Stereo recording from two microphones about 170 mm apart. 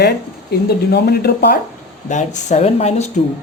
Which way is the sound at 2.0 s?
45° left (ahead or behind).